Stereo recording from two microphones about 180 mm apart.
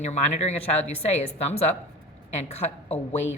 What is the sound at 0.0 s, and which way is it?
Speech, 40° left (ahead or behind).